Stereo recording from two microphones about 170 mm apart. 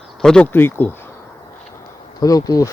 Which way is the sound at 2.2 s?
20° left (ahead or behind).